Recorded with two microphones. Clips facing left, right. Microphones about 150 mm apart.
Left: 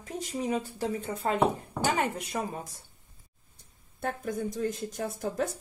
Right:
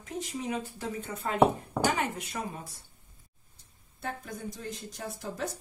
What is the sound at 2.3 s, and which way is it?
Speech, 35° left (ahead or behind).